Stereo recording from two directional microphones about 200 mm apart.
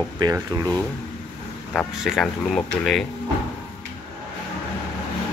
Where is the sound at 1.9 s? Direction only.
Centre (ahead or behind).